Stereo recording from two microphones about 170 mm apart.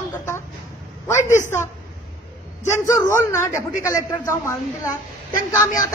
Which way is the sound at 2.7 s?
15° left (ahead or behind).